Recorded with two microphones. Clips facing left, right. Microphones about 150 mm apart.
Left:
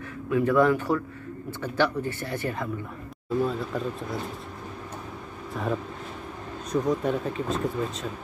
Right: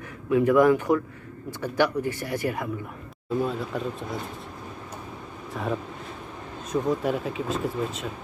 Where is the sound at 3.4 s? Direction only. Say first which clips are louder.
Left 1 dB; centre (ahead or behind).